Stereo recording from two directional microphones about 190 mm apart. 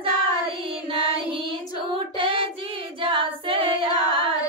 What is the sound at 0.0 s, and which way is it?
Child singing, 30° right (ahead or behind).